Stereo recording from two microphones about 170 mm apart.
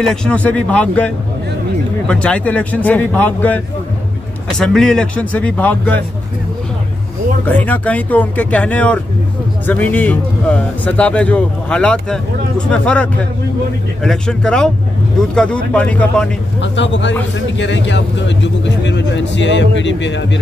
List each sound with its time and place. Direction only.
0.0 s a man's voice: 5° left (ahead or behind)
7.4 s a man's voice: 10° left (ahead or behind)
16.6 s speech: 90° left